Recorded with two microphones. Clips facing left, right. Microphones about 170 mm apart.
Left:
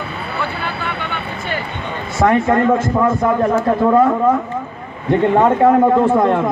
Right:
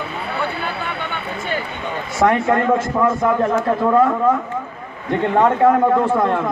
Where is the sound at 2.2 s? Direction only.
Centre (ahead or behind).